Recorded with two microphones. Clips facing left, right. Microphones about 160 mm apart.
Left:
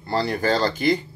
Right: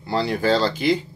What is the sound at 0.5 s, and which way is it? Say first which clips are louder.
Speech: right 1 dB; 50° left (ahead or behind).